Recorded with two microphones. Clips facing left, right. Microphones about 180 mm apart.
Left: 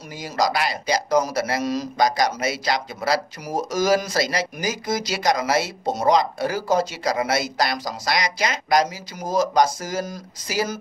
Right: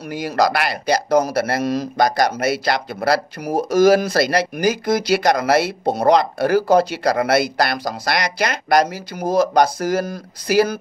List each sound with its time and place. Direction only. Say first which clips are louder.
0.1 s speech: right 5 dB; 65° right (ahead or behind)